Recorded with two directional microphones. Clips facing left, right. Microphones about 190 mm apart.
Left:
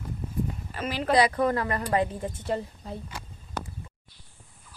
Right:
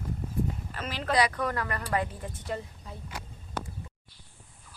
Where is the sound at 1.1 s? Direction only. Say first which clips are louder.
Left 5 dB; 25° left (ahead or behind).